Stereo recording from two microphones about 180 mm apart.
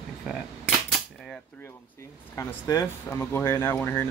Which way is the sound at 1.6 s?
15° left (ahead or behind).